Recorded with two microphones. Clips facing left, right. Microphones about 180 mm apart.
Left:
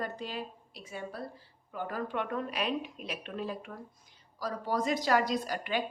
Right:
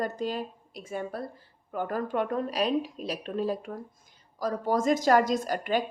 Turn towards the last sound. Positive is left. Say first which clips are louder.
# right 5 dB
turn(degrees=-45)  # may be behind; listen again after turning